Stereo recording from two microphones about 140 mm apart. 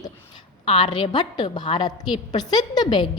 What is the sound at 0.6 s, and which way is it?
A woman's voice, 45° left (ahead or behind).